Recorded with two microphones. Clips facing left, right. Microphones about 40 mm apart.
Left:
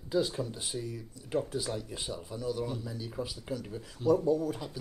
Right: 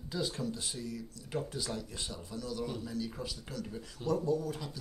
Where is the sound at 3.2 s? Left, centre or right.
Centre.